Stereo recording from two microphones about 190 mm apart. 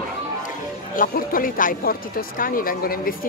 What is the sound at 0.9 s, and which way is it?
Speech, 50° left (ahead or behind).